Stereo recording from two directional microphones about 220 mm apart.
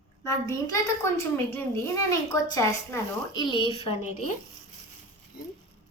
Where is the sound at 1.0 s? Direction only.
10° left (ahead or behind); by 4.3 s 30° left (ahead or behind).